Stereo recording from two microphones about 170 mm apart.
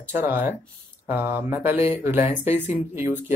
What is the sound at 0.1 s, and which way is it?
Speech, 15° right (ahead or behind).